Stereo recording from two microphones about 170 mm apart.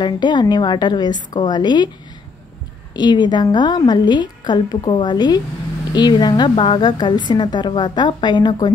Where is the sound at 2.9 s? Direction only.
25° left (ahead or behind).